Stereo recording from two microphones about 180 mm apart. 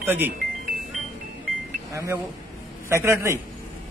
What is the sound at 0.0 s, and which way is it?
Speech, 10° right (ahead or behind).